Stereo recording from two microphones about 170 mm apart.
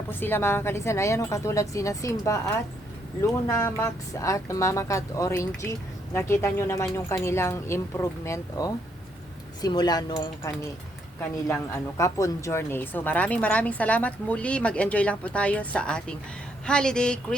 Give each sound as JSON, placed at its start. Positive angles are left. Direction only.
{"t": 0.1, "sound": "speech", "side_deg": 10}
{"t": 11.9, "sound": "speech", "side_deg": 15}